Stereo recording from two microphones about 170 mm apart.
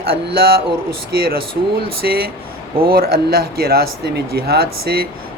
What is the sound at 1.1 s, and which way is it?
Speech, 65° right (ahead or behind).